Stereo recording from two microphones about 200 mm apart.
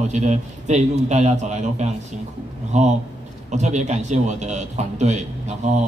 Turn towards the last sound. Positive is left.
turn(degrees=-35)  # may be behind; listen again after turning